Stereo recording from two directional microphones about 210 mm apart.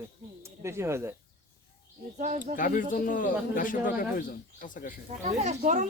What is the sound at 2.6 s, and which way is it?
Speech, 40° left (ahead or behind).